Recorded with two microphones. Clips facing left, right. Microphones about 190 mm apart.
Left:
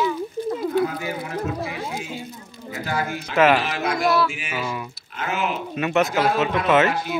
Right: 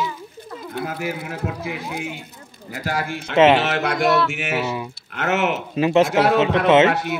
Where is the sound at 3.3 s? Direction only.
25° right (ahead or behind).